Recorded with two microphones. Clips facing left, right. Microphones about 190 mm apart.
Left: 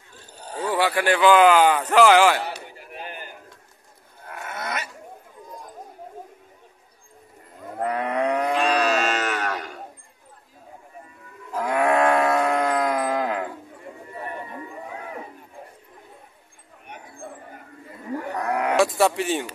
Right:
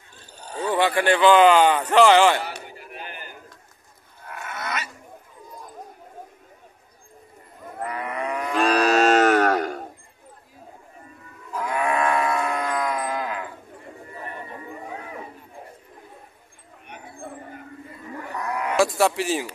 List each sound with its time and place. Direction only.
0.7 s speech: 5° left (ahead or behind)
4.5 s dog: 50° left (ahead or behind)
7.8 s livestock: 70° left (ahead or behind)
8.5 s music: 45° right (ahead or behind)
11.7 s groan: 75° left (ahead or behind)
12.2 s livestock: 70° left (ahead or behind)
18.3 s a sound: 60° left (ahead or behind)
18.8 s a sound: centre (ahead or behind)